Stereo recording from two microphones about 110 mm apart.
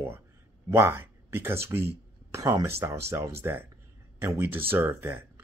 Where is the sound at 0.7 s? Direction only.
20° right (ahead or behind).